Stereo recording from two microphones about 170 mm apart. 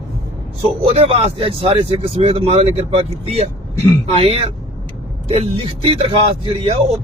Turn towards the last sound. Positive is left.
turn(degrees=-35)  # may be behind; listen again after turning